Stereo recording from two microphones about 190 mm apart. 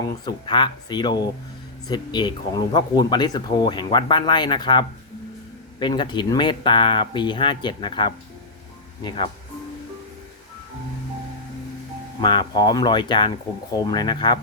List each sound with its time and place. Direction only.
0.0 s speech: 25° left (ahead or behind)
12.2 s speech: 25° left (ahead or behind)